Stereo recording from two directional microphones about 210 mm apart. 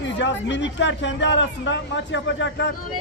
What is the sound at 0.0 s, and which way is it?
Speech, 55° left (ahead or behind).